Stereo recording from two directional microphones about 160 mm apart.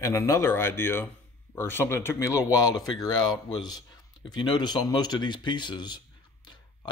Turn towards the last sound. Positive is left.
turn(degrees=30)  # may be behind; listen again after turning